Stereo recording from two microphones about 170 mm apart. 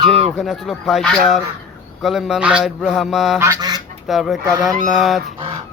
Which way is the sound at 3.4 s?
20° right (ahead or behind).